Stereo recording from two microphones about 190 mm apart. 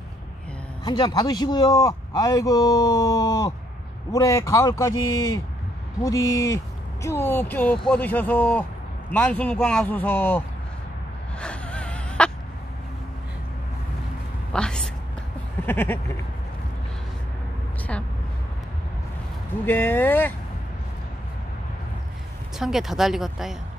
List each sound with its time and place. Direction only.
0.8 s a man's voice: 20° left (ahead or behind)
11.3 s wheeze: 5° left (ahead or behind)
14.5 s a sound: 5° left (ahead or behind)
19.6 s speech: 10° left (ahead or behind)
22.6 s speech: centre (ahead or behind)